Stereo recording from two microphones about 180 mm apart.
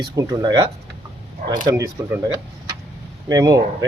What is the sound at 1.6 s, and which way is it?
Speech, 20° right (ahead or behind).